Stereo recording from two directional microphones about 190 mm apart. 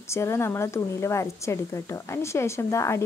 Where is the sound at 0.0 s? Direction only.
15° left (ahead or behind).